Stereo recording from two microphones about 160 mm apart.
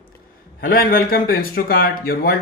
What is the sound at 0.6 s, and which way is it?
A man's voice, 65° left (ahead or behind).